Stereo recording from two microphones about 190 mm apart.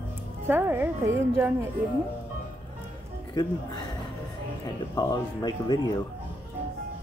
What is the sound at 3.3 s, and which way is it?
Speech, 20° left (ahead or behind).